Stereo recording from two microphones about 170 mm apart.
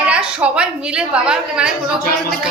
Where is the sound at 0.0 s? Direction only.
5° right (ahead or behind).